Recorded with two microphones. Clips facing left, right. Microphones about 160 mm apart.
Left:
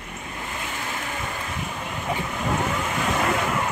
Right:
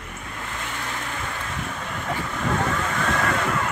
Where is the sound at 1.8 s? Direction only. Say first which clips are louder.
Left 2 dB; 15° left (ahead or behind).